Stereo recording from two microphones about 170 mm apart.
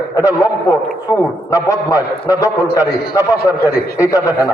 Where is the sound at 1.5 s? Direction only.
20° left (ahead or behind).